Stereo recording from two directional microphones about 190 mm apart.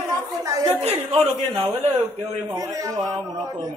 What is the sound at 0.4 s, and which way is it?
Chatter, 15° right (ahead or behind).